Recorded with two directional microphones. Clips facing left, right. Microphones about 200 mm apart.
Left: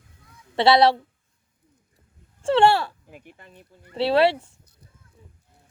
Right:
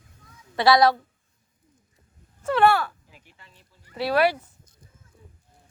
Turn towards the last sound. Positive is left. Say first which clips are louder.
# left 3 dB
turn(degrees=25)  # may be behind; listen again after turning